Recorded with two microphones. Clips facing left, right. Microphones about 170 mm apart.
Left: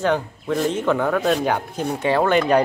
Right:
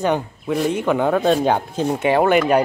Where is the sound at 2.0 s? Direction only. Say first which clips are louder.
Right 2 dB; 15° right (ahead or behind).